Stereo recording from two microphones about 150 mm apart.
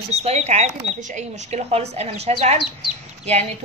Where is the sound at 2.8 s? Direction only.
45° right (ahead or behind).